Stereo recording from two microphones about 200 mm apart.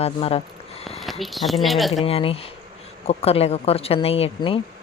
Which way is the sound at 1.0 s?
Centre (ahead or behind).